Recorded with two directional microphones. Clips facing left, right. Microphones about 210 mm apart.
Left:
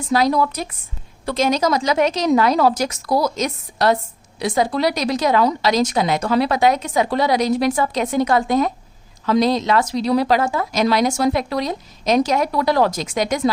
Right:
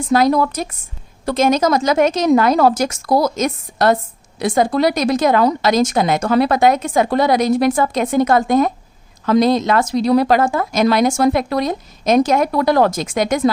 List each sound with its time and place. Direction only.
0.1 s a woman's voice: 50° right (ahead or behind)